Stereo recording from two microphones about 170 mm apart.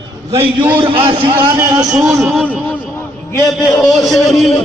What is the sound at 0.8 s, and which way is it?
Speech, 30° right (ahead or behind).